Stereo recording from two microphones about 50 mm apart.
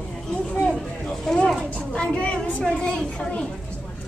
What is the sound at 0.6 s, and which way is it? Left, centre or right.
Speech, centre.